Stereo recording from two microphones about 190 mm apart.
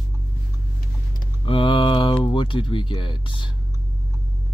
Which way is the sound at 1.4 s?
25° left (ahead or behind).